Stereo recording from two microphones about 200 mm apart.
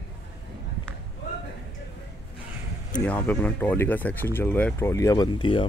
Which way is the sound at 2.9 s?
5° left (ahead or behind).